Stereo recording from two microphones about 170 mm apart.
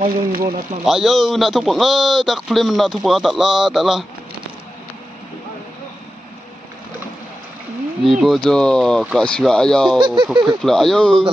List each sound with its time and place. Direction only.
0.0 s speech: 60° right (ahead or behind)
0.8 s a man's voice: centre (ahead or behind)
8.0 s a man's voice: centre (ahead or behind)
9.9 s speech: 25° right (ahead or behind)
10.4 s a man's voice: centre (ahead or behind)